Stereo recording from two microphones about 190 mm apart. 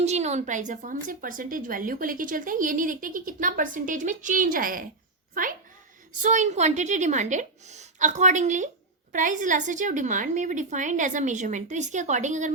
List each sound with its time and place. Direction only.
0.0 s a woman's voice: 35° right (ahead or behind)